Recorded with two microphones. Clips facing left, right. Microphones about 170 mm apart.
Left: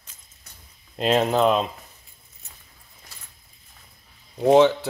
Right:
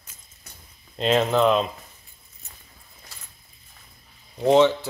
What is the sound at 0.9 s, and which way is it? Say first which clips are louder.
Speech: even; 5° left (ahead or behind).